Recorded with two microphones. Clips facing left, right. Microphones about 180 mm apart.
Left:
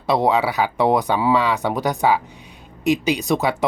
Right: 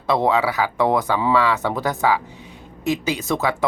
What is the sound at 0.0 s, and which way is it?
Speech, 15° left (ahead or behind).